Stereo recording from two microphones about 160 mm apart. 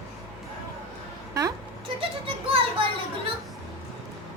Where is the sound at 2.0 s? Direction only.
35° right (ahead or behind).